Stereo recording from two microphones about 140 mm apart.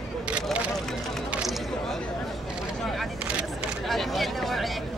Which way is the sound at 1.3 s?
5° right (ahead or behind).